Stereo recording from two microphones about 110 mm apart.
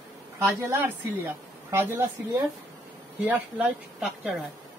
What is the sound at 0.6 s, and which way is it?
A woman's voice, 20° right (ahead or behind).